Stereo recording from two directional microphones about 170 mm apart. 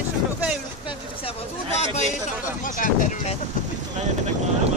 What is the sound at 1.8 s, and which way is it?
Speech, 45° left (ahead or behind).